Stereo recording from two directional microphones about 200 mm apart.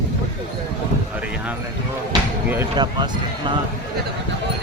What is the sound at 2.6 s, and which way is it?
Speech, 20° right (ahead or behind).